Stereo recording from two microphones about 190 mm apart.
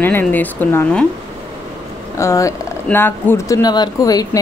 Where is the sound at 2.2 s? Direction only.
15° left (ahead or behind).